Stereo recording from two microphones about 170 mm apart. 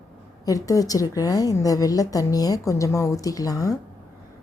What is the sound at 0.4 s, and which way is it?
A woman's voice, 20° left (ahead or behind).